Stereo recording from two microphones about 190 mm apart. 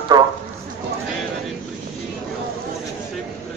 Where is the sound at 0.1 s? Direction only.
20° right (ahead or behind).